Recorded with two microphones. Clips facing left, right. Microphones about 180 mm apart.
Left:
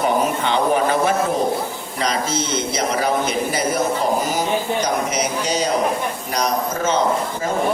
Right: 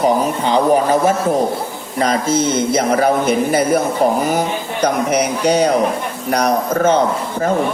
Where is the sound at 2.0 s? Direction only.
50° right (ahead or behind).